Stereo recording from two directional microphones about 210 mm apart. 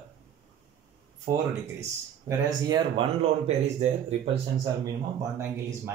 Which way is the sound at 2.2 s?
20° right (ahead or behind).